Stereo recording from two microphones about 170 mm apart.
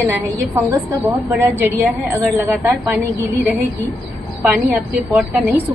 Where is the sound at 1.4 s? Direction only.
10° right (ahead or behind).